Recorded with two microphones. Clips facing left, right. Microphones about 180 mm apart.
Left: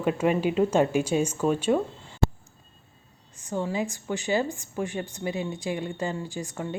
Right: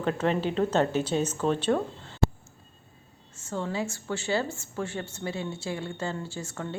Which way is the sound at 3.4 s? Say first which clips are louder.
Left 3 dB; 15° left (ahead or behind).